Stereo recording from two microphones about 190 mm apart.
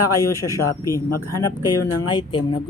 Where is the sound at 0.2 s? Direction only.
15° left (ahead or behind).